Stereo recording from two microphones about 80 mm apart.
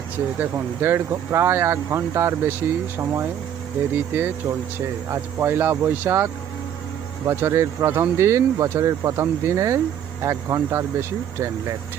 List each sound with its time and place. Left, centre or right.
0.3 s speech: right